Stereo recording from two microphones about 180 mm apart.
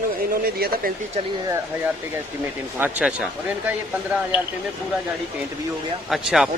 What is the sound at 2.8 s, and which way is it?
Speech, 10° right (ahead or behind).